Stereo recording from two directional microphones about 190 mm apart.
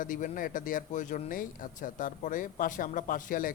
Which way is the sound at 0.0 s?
45° left (ahead or behind).